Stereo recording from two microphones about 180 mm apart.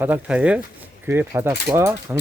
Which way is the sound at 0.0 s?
10° right (ahead or behind).